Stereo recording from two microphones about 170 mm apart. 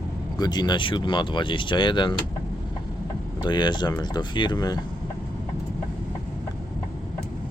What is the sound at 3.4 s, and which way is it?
Speech, 25° left (ahead or behind).